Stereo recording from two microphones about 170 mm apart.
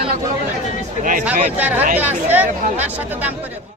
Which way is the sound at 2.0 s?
10° right (ahead or behind).